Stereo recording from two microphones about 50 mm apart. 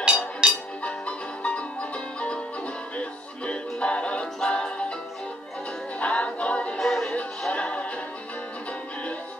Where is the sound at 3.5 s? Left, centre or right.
Left.